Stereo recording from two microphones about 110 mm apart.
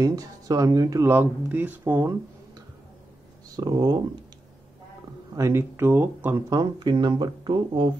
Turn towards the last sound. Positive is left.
turn(degrees=-45)  # may be behind; listen again after turning